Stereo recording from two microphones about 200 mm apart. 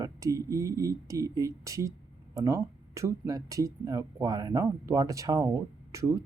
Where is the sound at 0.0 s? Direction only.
15° right (ahead or behind).